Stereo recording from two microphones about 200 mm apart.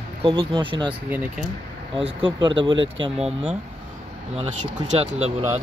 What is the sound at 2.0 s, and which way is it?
Speech, 25° right (ahead or behind).